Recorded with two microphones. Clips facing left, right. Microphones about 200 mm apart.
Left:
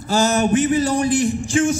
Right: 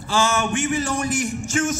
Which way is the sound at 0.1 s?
40° left (ahead or behind).